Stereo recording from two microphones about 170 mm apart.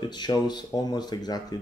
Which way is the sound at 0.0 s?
25° left (ahead or behind).